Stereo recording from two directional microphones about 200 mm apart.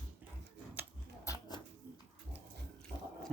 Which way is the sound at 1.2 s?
20° left (ahead or behind).